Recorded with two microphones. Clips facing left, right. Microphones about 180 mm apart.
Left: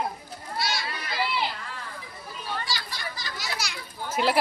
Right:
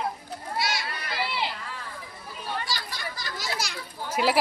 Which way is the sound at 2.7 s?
50° right (ahead or behind).